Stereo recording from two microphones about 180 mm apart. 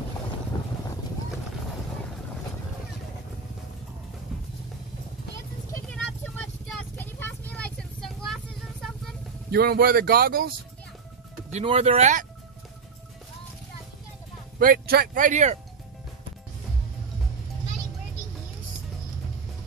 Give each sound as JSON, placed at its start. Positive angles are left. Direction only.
{"t": 0.5, "sound": "boat", "side_deg": 25}
{"t": 5.7, "sound": "vehicle", "side_deg": 5}
{"t": 9.5, "sound": "speech", "side_deg": -60}
{"t": 11.5, "sound": "speech", "side_deg": -35}
{"t": 14.6, "sound": "speech", "side_deg": -55}